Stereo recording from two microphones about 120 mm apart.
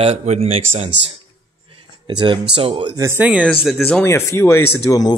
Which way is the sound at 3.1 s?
10° right (ahead or behind).